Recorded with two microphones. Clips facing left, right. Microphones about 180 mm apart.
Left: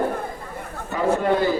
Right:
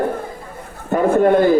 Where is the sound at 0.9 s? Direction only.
50° right (ahead or behind).